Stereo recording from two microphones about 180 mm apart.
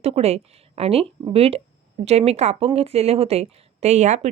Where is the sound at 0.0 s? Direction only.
35° right (ahead or behind).